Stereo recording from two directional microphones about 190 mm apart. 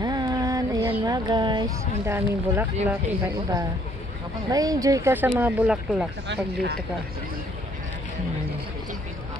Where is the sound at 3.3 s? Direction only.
20° right (ahead or behind).